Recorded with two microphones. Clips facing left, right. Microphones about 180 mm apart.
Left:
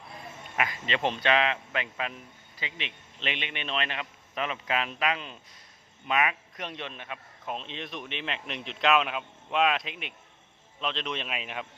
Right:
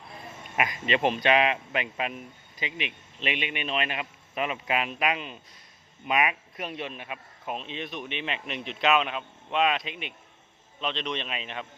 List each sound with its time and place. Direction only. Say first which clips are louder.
0.5 s a man's voice: right 3 dB; 15° right (ahead or behind); by 11.6 s 5° left (ahead or behind)